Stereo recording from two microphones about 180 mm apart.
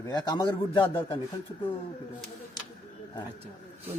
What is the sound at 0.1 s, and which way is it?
A man's voice, 25° left (ahead or behind).